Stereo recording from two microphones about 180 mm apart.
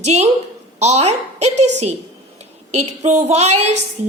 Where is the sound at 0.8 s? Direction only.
35° right (ahead or behind).